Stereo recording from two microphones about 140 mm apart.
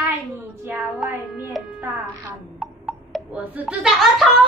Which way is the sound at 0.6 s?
15° right (ahead or behind).